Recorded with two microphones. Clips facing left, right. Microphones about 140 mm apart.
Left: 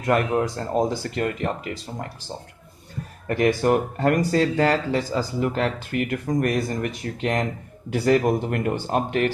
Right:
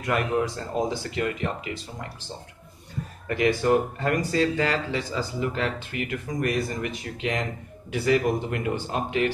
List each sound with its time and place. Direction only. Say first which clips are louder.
0.0 s speech: left 4 dB; 45° left (ahead or behind)
3.3 s speech: left 2 dB; 50° left (ahead or behind)